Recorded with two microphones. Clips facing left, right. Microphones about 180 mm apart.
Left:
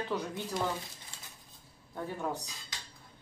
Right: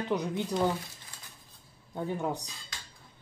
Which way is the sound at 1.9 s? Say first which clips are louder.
Right 4 dB; 20° right (ahead or behind).